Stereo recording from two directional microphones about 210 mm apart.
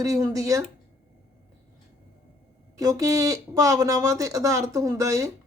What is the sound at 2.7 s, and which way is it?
Speech, 15° right (ahead or behind).